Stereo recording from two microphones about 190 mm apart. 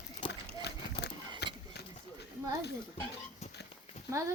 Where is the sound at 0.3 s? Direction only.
60° left (ahead or behind).